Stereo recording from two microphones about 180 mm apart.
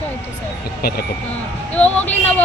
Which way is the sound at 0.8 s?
60° left (ahead or behind).